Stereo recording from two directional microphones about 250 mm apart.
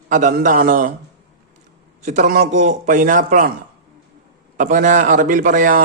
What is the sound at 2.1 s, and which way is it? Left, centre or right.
A man's voice, right.